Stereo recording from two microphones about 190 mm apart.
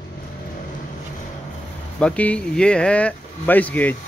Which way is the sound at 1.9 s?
5° left (ahead or behind).